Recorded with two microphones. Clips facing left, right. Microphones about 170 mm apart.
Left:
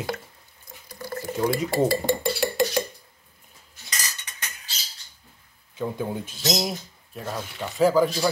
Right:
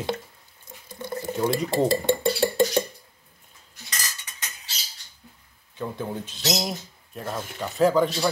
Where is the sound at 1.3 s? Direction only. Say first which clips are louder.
Even; centre (ahead or behind).